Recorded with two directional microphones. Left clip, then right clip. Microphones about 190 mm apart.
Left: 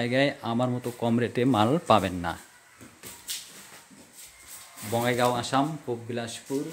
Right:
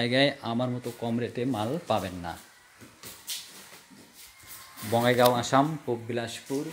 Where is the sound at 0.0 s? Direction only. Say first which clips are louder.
Even; centre (ahead or behind).